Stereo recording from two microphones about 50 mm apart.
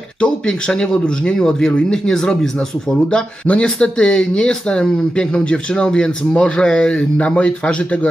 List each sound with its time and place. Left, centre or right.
0.2 s speech: centre